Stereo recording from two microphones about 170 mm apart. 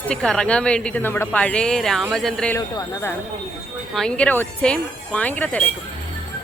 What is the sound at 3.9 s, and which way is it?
Speech, 5° left (ahead or behind).